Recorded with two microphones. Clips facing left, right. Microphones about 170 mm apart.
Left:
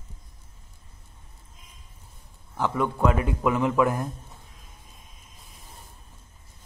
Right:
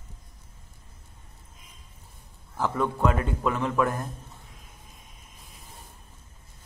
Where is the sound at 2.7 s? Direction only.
10° left (ahead or behind).